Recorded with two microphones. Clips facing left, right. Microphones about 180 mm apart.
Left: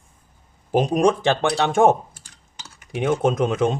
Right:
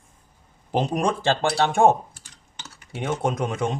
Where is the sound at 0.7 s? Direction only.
15° left (ahead or behind).